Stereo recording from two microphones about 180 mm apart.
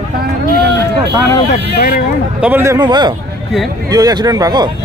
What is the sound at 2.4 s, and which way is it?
Speech, 10° right (ahead or behind).